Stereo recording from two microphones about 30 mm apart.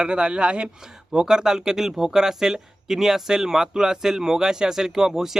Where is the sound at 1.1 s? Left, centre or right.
Right.